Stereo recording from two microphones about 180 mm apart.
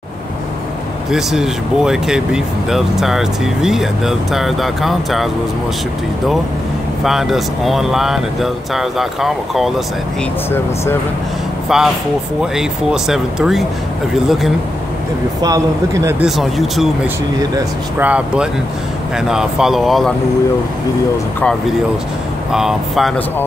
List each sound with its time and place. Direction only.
1.1 s speech: centre (ahead or behind)
7.1 s speech: centre (ahead or behind)
11.7 s speech: 5° right (ahead or behind)
15.4 s speech: 20° right (ahead or behind)
16.2 s speech: centre (ahead or behind)
17.4 s speech: 20° right (ahead or behind)
18.0 s speech: 5° right (ahead or behind)
22.5 s speech: centre (ahead or behind)